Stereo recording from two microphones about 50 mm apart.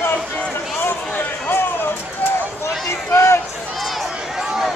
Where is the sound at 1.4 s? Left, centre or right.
Left.